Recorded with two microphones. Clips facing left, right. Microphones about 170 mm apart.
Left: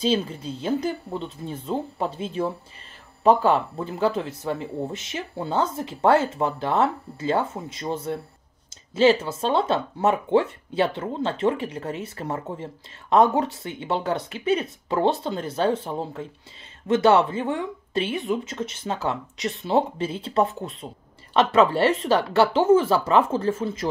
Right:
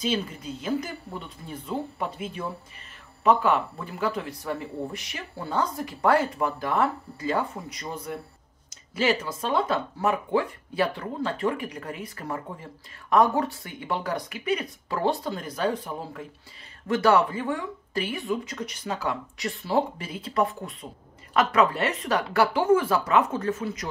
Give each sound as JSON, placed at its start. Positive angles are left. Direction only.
{"t": 0.0, "sound": "speech", "side_deg": 30}